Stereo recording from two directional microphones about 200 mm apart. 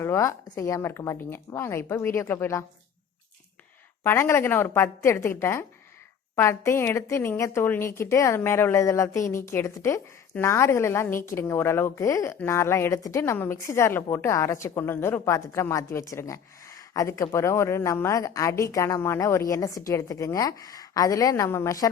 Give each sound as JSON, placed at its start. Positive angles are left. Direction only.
{"t": 0.0, "sound": "a woman's voice", "side_deg": 15}
{"t": 4.0, "sound": "a woman's voice", "side_deg": 10}